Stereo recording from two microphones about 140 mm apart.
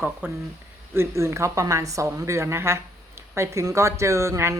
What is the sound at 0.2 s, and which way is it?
Speech, 15° right (ahead or behind).